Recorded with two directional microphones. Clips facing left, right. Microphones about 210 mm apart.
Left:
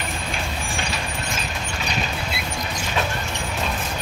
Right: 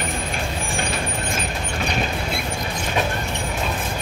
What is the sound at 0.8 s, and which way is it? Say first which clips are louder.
Vehicle: right 3 dB; 55° right (ahead or behind).